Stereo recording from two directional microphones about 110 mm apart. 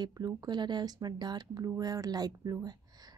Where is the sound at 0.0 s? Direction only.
40° right (ahead or behind).